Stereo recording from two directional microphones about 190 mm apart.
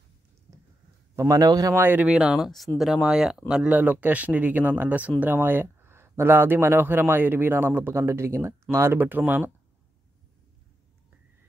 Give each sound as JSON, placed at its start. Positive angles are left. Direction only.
{"t": 1.1, "sound": "speech", "side_deg": -15}